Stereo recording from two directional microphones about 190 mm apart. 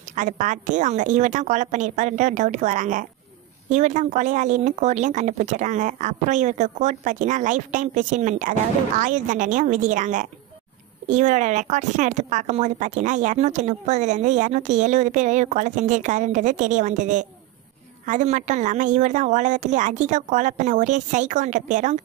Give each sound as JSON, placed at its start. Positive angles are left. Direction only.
{"t": 0.1, "sound": "speech", "side_deg": -40}